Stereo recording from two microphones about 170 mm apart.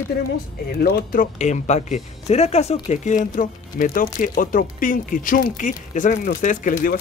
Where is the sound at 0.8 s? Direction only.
60° left (ahead or behind).